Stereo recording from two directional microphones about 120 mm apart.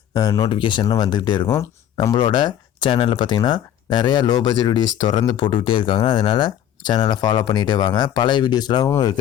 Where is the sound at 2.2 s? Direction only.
40° left (ahead or behind).